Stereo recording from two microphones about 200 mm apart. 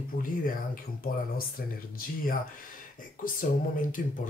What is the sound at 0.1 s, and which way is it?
Speech, 45° left (ahead or behind).